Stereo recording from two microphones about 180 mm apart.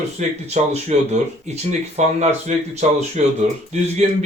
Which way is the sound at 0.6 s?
45° right (ahead or behind).